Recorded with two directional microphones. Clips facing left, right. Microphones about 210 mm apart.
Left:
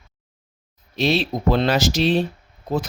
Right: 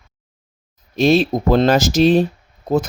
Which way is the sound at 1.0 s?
45° right (ahead or behind).